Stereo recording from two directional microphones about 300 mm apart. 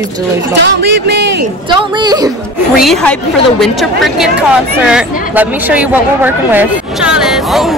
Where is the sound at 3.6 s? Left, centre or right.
Centre.